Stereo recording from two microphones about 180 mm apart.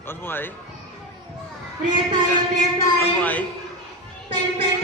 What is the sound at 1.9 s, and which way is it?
Music, 25° right (ahead or behind).